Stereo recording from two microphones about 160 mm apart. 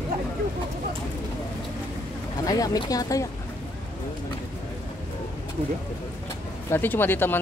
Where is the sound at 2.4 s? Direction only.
25° left (ahead or behind).